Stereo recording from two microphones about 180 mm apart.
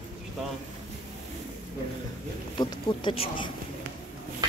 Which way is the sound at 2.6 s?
25° left (ahead or behind).